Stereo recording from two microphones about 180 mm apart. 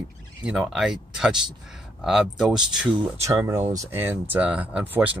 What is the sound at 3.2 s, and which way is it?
Speech, 15° right (ahead or behind).